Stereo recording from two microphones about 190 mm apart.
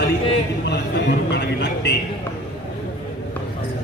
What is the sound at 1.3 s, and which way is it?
Speech, 65° left (ahead or behind).